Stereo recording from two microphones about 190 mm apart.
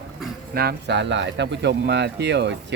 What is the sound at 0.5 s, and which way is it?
Speech, 55° right (ahead or behind).